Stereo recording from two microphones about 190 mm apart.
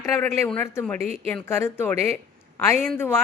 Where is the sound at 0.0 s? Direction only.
10° left (ahead or behind).